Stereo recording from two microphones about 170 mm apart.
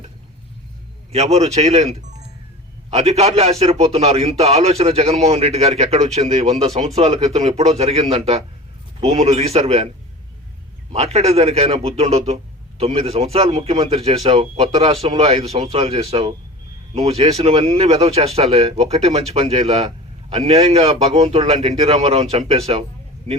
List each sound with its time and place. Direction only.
1.1 s speech: 40° right (ahead or behind)
10.9 s speech: 40° right (ahead or behind)